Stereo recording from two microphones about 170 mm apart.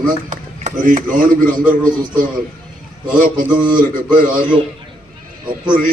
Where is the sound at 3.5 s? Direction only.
25° right (ahead or behind).